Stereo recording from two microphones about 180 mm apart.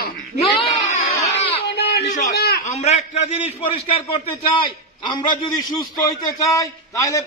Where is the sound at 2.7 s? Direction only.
40° left (ahead or behind).